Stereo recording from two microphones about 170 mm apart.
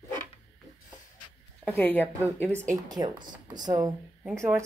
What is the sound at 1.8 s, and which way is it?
Speech, 10° left (ahead or behind).